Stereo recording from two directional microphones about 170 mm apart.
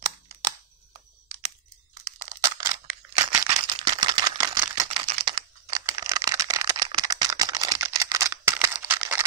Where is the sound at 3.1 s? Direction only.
20° right (ahead or behind).